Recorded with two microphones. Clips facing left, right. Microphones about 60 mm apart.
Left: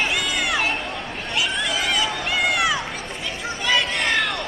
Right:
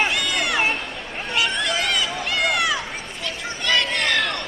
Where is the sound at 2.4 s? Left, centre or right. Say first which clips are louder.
Even; centre.